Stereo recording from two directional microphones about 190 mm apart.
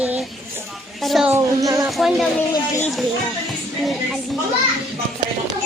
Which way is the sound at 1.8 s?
Centre (ahead or behind).